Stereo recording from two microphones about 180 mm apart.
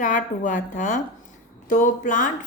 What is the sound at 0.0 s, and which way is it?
A woman's voice, 45° left (ahead or behind).